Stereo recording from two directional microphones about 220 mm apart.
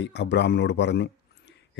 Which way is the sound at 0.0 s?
50° left (ahead or behind).